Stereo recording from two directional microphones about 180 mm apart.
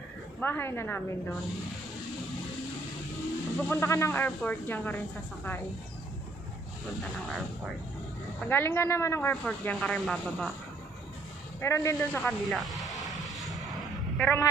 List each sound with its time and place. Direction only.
0.4 s speech: 10° left (ahead or behind)
3.6 s speech: 15° left (ahead or behind)
8.5 s speech: 10° left (ahead or behind)
11.6 s vehicle: 15° left (ahead or behind); by 13.7 s centre (ahead or behind)
14.1 s a man's voice: 10° left (ahead or behind)